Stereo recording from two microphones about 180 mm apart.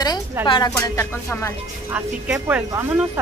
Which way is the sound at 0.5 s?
20° left (ahead or behind).